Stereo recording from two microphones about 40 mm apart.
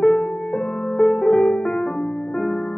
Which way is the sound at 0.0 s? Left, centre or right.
Left.